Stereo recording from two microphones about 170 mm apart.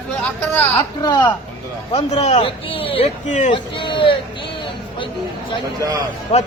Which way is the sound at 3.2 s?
45° left (ahead or behind).